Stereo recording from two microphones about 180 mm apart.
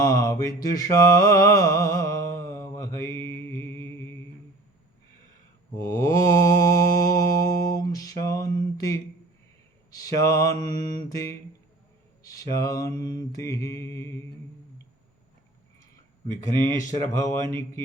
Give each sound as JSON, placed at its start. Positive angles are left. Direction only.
{"t": 0.0, "sound": "mantra", "side_deg": 20}
{"t": 3.2, "sound": "music", "side_deg": 10}
{"t": 5.8, "sound": "mantra", "side_deg": 20}
{"t": 10.0, "sound": "mantra", "side_deg": 20}
{"t": 16.9, "sound": "mantra", "side_deg": 15}